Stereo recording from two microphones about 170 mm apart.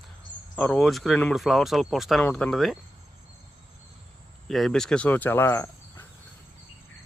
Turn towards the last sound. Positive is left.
turn(degrees=15)  # may be behind; listen again after turning